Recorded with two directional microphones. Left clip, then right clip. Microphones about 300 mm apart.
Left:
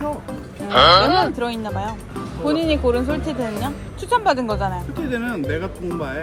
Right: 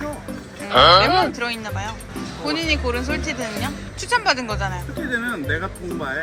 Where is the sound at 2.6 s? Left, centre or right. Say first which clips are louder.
Left 3 dB; centre.